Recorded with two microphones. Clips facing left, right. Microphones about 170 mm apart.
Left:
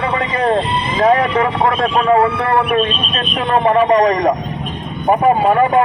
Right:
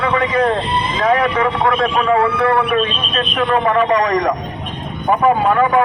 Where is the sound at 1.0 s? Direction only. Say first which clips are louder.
Left 3 dB; 25° left (ahead or behind).